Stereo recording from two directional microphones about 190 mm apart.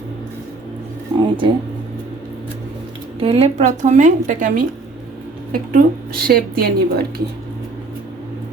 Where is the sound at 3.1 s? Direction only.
30° right (ahead or behind).